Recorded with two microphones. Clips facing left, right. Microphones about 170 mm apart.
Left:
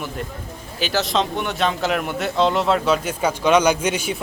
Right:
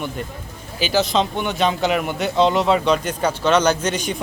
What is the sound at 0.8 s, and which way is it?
A man's voice, centre (ahead or behind).